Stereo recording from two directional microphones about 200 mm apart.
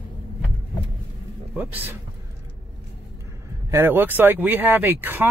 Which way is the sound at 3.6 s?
10° right (ahead or behind).